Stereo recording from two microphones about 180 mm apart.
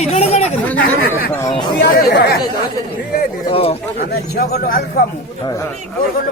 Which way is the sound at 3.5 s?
35° left (ahead or behind).